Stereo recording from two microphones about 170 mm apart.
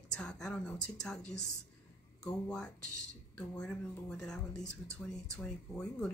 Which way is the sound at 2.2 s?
5° left (ahead or behind).